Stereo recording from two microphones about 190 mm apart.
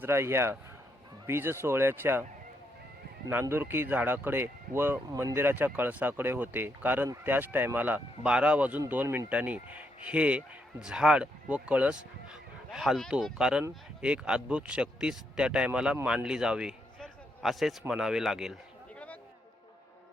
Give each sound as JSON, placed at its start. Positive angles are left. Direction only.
{"t": 0.0, "sound": "speech", "side_deg": -15}
{"t": 3.2, "sound": "speech", "side_deg": -10}